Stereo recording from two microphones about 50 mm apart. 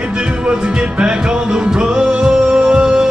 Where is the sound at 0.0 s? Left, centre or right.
Centre.